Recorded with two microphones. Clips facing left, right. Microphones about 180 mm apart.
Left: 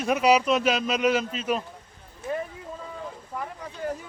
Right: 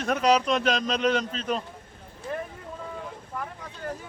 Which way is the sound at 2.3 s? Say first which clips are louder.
Left 3 dB; 5° left (ahead or behind).